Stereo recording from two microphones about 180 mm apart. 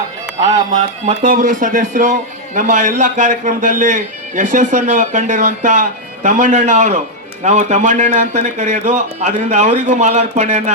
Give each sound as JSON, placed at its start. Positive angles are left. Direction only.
{"t": 0.4, "sound": "a man's voice", "side_deg": -40}